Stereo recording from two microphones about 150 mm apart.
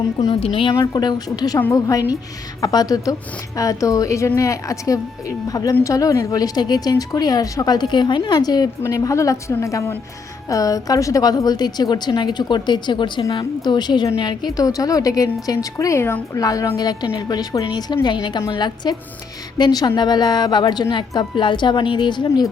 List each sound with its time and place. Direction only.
0.2 s a woman's voice: 35° left (ahead or behind)